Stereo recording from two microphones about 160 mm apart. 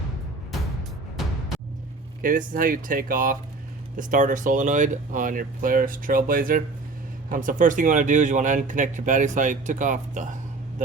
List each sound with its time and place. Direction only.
2.5 s speech: 60° right (ahead or behind)